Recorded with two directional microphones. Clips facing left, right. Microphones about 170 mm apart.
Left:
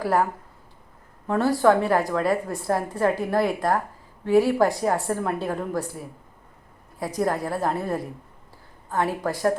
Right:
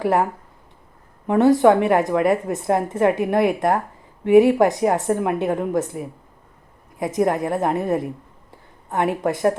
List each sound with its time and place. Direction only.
0.0 s a woman's voice: 25° right (ahead or behind)
1.3 s a woman's voice: 20° right (ahead or behind)
8.4 s a sound: 20° right (ahead or behind)
9.2 s a woman's voice: 20° right (ahead or behind)